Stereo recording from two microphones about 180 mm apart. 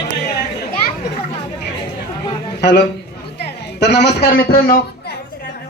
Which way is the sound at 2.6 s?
75° left (ahead or behind).